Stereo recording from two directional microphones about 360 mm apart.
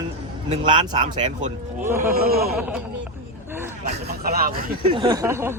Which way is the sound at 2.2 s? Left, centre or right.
Right.